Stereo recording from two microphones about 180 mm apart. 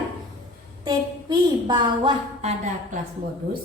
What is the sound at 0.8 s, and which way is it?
A woman's voice, 25° right (ahead or behind).